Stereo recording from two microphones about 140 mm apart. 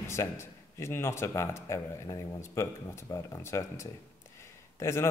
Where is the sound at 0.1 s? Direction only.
20° left (ahead or behind).